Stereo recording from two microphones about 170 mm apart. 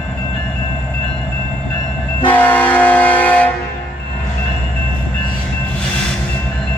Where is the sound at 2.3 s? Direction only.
10° left (ahead or behind).